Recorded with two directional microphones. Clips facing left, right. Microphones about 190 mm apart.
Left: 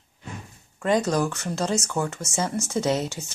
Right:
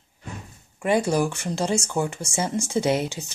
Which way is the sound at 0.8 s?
10° right (ahead or behind).